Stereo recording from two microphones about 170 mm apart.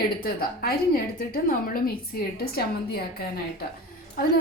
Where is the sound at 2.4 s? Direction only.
65° left (ahead or behind).